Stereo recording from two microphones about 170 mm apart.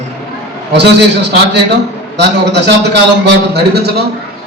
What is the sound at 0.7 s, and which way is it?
A man's voice, 85° right.